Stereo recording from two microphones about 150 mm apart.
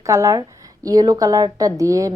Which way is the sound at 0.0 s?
20° right (ahead or behind).